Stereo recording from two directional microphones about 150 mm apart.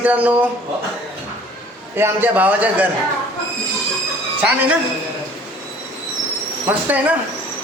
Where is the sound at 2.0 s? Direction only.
10° right (ahead or behind).